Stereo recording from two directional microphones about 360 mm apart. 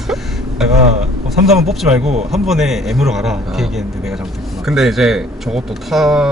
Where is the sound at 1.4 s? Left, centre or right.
Centre.